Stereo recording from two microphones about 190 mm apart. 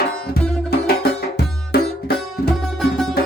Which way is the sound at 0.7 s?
55° left (ahead or behind).